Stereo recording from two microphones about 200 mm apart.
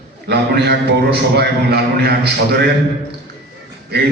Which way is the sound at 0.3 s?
55° right (ahead or behind).